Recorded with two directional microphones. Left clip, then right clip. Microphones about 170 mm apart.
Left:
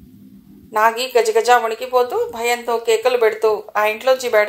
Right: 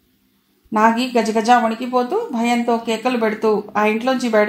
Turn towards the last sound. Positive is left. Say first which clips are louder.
# left 2 dB
turn(degrees=40)  # may be behind; listen again after turning